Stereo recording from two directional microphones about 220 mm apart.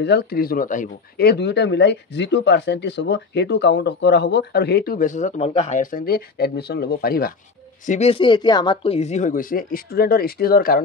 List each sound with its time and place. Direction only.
0.0 s speech: 50° left (ahead or behind)
7.8 s speech: 30° left (ahead or behind)